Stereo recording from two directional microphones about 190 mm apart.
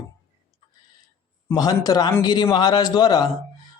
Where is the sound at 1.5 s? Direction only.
20° left (ahead or behind).